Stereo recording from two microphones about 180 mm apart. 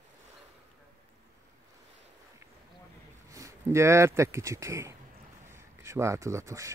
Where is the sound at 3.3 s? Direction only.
20° right (ahead or behind).